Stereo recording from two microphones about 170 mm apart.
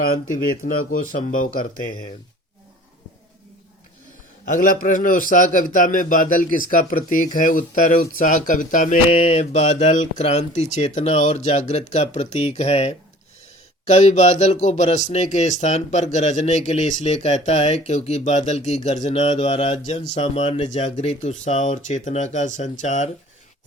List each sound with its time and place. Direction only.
0.0 s speech: 55° left (ahead or behind)
4.4 s speech: 50° left (ahead or behind)